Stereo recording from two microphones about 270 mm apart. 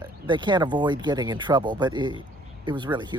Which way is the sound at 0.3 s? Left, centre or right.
Centre.